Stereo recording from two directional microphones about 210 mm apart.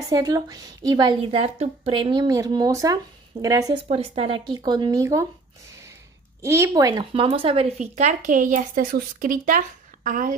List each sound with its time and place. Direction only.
0.1 s a woman's voice: 15° right (ahead or behind)
3.8 s speech: 25° right (ahead or behind)
6.4 s speech: 15° right (ahead or behind); by 10.3 s 40° right (ahead or behind)